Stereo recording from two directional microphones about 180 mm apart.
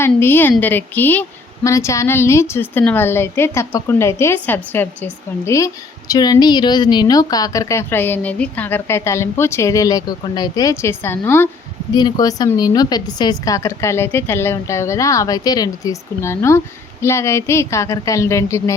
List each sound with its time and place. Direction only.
0.0 s a woman's voice: 10° left (ahead or behind)
11.9 s a woman's voice: 20° left (ahead or behind)